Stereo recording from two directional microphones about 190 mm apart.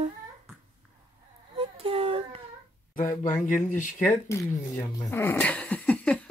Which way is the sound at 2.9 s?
45° left (ahead or behind).